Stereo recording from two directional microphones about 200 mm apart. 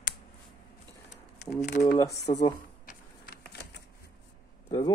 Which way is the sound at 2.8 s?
50° left (ahead or behind).